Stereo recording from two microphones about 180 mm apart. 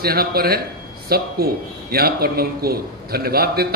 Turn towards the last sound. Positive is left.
turn(degrees=-60)  # may be behind; listen again after turning